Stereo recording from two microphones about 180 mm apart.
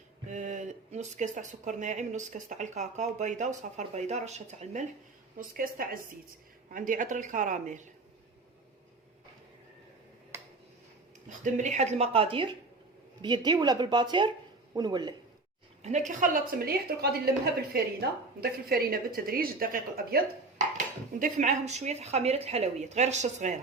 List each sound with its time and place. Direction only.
0.3 s speech: 40° right (ahead or behind)
5.4 s a woman's voice: 55° right (ahead or behind)
10.3 s a sound: 15° right (ahead or behind)
11.3 s speech: 45° right (ahead or behind); by 15.1 s 25° right (ahead or behind)
15.8 s a woman's voice: 40° right (ahead or behind)